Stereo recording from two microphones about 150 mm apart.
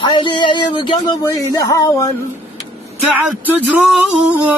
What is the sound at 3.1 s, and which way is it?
Speech, 10° right (ahead or behind).